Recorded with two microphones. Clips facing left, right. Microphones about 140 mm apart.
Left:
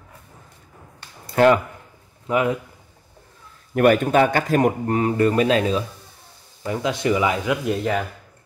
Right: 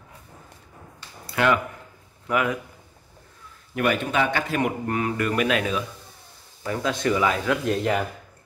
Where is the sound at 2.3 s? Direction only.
25° left (ahead or behind).